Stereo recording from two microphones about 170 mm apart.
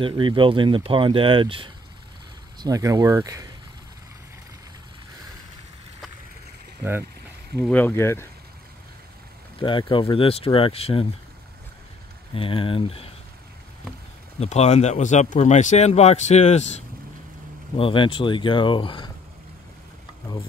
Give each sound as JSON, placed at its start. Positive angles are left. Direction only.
{"t": 0.0, "sound": "speech", "side_deg": -30}
{"t": 2.6, "sound": "speech", "side_deg": -20}
{"t": 6.8, "sound": "speech", "side_deg": -15}
{"t": 7.7, "sound": "speech", "side_deg": 10}
{"t": 9.6, "sound": "speech", "side_deg": 30}
{"t": 12.4, "sound": "speech", "side_deg": 30}
{"t": 14.4, "sound": "speech", "side_deg": 40}
{"t": 17.7, "sound": "speech", "side_deg": 30}